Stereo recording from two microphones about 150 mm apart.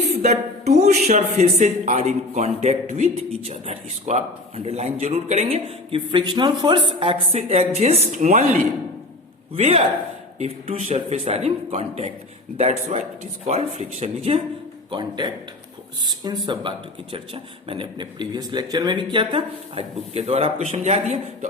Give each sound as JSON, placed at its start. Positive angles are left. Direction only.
{"t": 0.0, "sound": "speech", "side_deg": -50}
{"t": 9.6, "sound": "speech", "side_deg": -45}
{"t": 14.8, "sound": "a man's voice", "side_deg": -30}